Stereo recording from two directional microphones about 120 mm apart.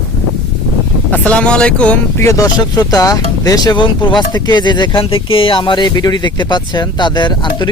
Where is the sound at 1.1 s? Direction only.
10° left (ahead or behind).